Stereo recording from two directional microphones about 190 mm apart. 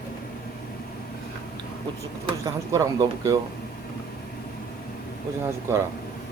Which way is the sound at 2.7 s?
15° right (ahead or behind).